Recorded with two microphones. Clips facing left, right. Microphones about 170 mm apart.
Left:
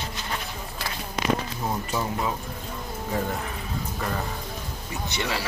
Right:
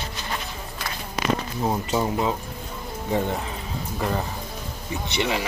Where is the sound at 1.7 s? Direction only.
25° right (ahead or behind).